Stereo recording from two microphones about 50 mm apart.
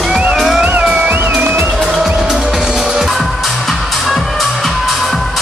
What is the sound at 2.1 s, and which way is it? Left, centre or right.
Music, centre.